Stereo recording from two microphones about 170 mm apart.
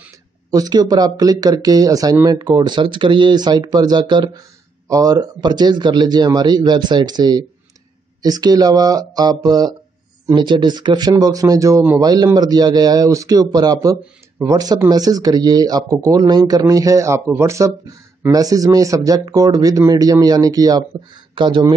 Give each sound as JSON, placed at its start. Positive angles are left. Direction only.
{"t": 0.5, "sound": "speech", "side_deg": -25}